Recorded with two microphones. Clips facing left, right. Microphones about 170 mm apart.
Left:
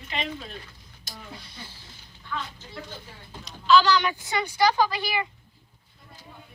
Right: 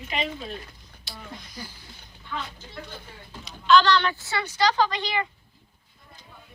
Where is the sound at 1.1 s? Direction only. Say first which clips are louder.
Right 1 dB; 45° left (ahead or behind).